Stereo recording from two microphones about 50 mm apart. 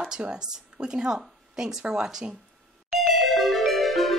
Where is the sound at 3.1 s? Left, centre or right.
Centre.